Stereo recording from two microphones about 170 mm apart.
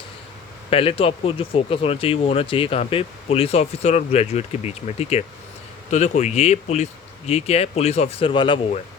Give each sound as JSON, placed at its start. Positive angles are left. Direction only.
{"t": 0.7, "sound": "speech", "side_deg": 35}